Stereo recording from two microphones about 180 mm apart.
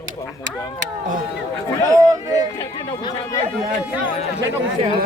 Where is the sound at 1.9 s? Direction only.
20° right (ahead or behind).